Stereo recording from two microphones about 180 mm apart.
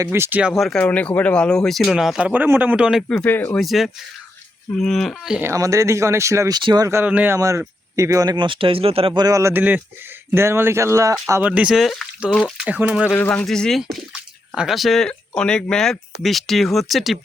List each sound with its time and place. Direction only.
0.0 s speech: 15° right (ahead or behind); by 3.6 s 10° left (ahead or behind)
3.6 s speech: centre (ahead or behind)
5.4 s speech: 15° right (ahead or behind)
13.1 s speech: 10° left (ahead or behind)